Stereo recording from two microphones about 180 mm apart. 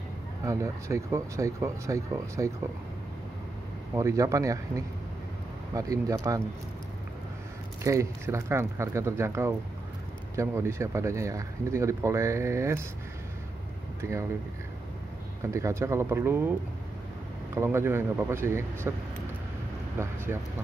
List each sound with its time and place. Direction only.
0.5 s speech: 15° right (ahead or behind)
3.9 s speech: 15° right (ahead or behind)
7.8 s speech: 15° right (ahead or behind)
14.0 s speech: 15° right (ahead or behind)
15.4 s speech: 15° right (ahead or behind)
17.6 s speech: 15° right (ahead or behind)
20.0 s speech: 15° right (ahead or behind)